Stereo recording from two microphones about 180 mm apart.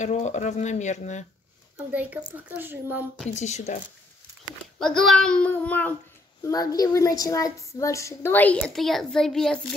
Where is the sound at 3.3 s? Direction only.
40° left (ahead or behind).